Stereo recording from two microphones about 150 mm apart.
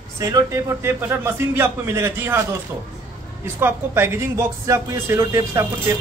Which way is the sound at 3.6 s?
15° right (ahead or behind).